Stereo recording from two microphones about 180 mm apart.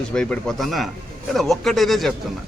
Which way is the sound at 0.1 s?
5° left (ahead or behind).